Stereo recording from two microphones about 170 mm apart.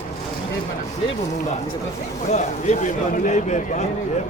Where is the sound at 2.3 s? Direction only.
45° left (ahead or behind).